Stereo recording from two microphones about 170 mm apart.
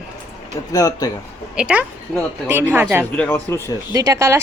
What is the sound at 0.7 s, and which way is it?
Speech, 20° left (ahead or behind).